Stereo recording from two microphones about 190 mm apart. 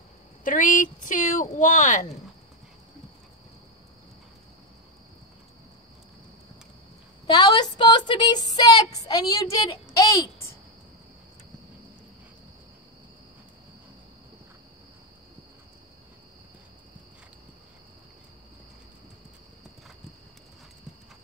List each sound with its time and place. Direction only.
0.4 s speech: 45° left (ahead or behind)
7.3 s a woman's voice: 20° left (ahead or behind)